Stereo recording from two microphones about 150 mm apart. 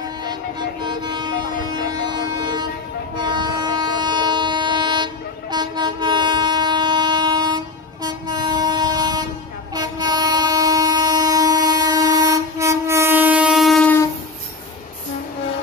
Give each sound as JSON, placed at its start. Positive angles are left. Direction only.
{"t": 0.8, "sound": "music", "side_deg": -30}
{"t": 1.8, "sound": "vehicle", "side_deg": -30}
{"t": 3.2, "sound": "train", "side_deg": -30}